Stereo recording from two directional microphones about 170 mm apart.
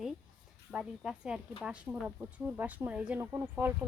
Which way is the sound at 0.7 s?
5° right (ahead or behind).